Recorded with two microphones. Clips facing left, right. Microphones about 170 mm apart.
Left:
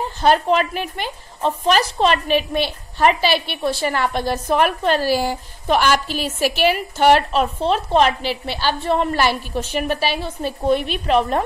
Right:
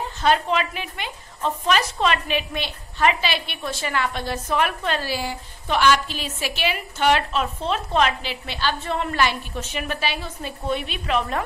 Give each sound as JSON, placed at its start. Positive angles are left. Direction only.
{"t": 0.2, "sound": "a woman's voice", "side_deg": 40}